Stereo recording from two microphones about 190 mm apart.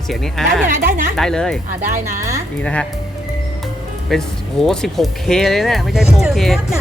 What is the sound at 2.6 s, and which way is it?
Speech, 5° left (ahead or behind).